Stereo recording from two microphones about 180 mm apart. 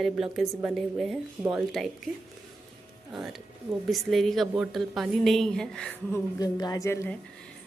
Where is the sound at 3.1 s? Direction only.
Centre (ahead or behind).